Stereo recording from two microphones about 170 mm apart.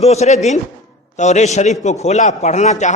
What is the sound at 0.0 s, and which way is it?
A man's voice, 40° left (ahead or behind).